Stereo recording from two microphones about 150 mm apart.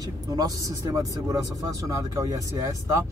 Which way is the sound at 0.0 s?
25° right (ahead or behind).